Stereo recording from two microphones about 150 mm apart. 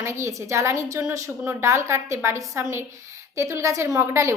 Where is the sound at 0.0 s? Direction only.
20° right (ahead or behind).